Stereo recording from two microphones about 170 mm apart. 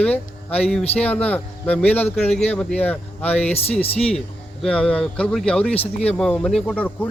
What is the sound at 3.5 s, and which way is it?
Speech, 35° left (ahead or behind).